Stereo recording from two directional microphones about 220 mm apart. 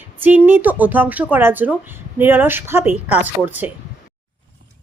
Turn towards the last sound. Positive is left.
turn(degrees=-10)  # may be behind; listen again after turning